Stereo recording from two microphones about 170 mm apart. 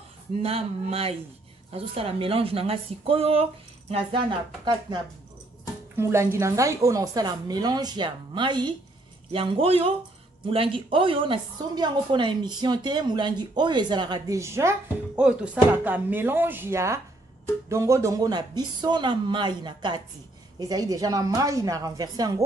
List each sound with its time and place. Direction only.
0.4 s a woman's voice: 35° right (ahead or behind)
5.9 s a woman's voice: 15° right (ahead or behind)